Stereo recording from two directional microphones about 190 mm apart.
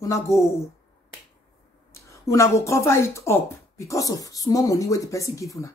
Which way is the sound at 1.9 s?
15° left (ahead or behind).